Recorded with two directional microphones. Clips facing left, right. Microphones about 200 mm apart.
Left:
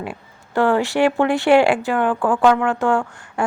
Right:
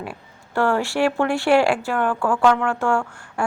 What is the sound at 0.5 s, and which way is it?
A woman's voice, 15° left (ahead or behind).